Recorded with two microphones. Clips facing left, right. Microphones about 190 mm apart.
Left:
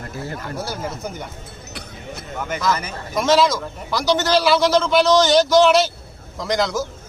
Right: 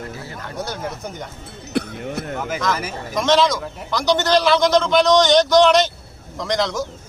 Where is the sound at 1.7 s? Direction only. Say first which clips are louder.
Right 12 dB; 60° right (ahead or behind).